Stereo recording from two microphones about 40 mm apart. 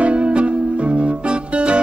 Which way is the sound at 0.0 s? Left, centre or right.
Right.